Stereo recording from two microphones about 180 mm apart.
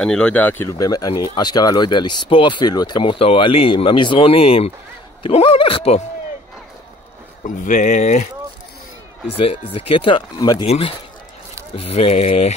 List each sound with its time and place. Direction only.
0.0 s speech: 5° left (ahead or behind); by 6.0 s 35° left (ahead or behind)
7.4 s speech: 45° left (ahead or behind)
9.8 s speech: 30° left (ahead or behind)